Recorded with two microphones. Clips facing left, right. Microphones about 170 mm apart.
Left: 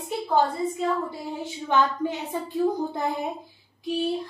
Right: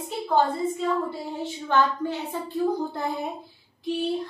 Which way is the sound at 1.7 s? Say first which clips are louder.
Even; 15° left (ahead or behind).